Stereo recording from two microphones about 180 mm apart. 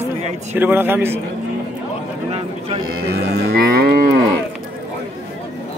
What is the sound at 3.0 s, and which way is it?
Cattle, 65° right (ahead or behind).